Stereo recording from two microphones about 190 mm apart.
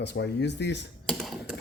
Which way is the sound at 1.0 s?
Centre (ahead or behind).